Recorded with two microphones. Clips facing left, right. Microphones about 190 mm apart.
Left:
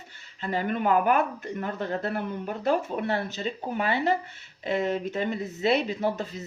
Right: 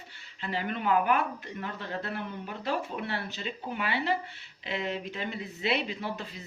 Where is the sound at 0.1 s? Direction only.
45° left (ahead or behind).